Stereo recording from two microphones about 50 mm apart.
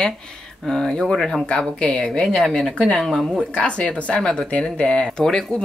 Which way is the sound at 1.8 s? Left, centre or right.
Left.